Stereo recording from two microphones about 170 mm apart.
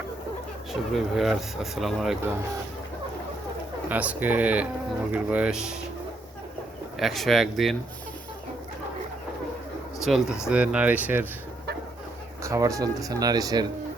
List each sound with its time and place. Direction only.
0.7 s speech: centre (ahead or behind)
3.8 s speech: 10° right (ahead or behind)
7.0 s speech: centre (ahead or behind)
10.0 s speech: centre (ahead or behind)
12.4 s speech: 20° right (ahead or behind)